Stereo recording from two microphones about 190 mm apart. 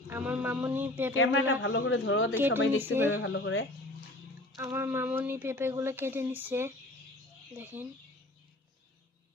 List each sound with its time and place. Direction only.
0.1 s speech: 10° right (ahead or behind)
1.1 s a man's voice: 90° left
2.3 s speech: 10° right (ahead or behind)
3.1 s a man's voice: 90° left
4.5 s speech: 15° right (ahead or behind)